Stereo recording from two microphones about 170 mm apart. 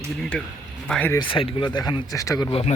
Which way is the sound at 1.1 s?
30° left (ahead or behind).